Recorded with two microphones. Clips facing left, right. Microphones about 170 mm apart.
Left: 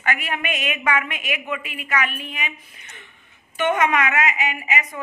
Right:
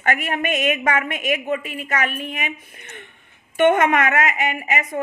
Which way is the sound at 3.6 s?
50° right (ahead or behind).